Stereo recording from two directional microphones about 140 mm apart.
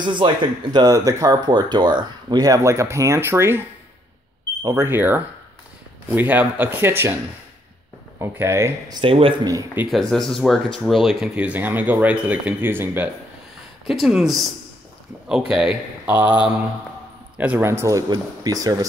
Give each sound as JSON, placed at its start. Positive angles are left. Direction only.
{"t": 0.0, "sound": "speech", "side_deg": -35}
{"t": 4.6, "sound": "speech", "side_deg": -20}
{"t": 8.2, "sound": "speech", "side_deg": -20}
{"t": 9.0, "sound": "speech", "side_deg": -40}
{"t": 9.8, "sound": "speech", "side_deg": 0}
{"t": 13.8, "sound": "speech", "side_deg": 0}
{"t": 17.4, "sound": "speech", "side_deg": -15}